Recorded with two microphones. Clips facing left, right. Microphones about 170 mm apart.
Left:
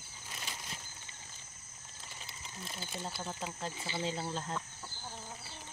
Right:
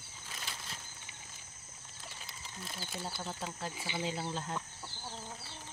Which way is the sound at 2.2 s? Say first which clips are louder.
Left 1 dB; centre (ahead or behind).